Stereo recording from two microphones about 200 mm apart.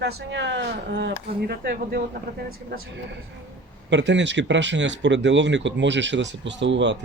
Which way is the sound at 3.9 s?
65° right (ahead or behind).